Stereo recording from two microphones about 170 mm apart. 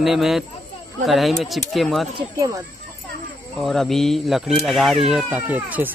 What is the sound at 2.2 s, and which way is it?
Speech, 20° right (ahead or behind).